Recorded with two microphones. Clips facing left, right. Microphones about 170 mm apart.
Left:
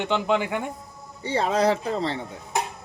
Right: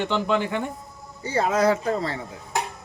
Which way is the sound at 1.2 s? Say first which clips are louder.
Right 1 dB; 30° left (ahead or behind).